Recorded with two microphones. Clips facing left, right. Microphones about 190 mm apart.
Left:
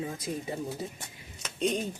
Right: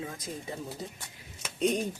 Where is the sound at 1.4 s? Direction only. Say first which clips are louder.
Right 1 dB; 10° right (ahead or behind).